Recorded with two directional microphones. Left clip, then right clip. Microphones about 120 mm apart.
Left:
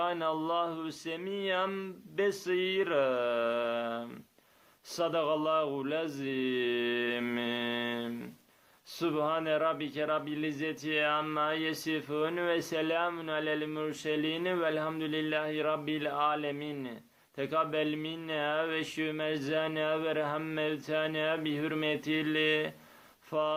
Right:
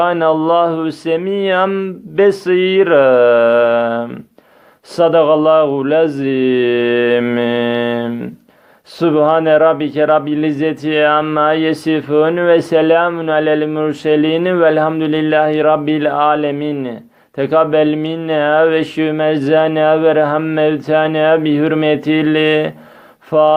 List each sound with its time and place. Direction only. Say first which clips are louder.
0.0 s a man's voice: right 19 dB; 45° right (ahead or behind)